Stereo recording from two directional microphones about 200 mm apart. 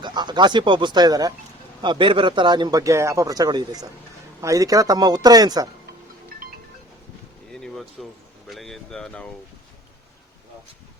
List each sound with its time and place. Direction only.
0.0 s a man's voice: 20° right (ahead or behind)
7.5 s a sound: 5° left (ahead or behind)
8.4 s speech: centre (ahead or behind)